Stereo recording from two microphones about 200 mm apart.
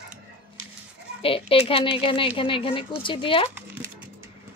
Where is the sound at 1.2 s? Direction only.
25° left (ahead or behind).